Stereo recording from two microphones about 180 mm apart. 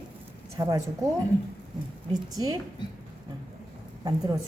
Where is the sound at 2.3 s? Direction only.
20° right (ahead or behind).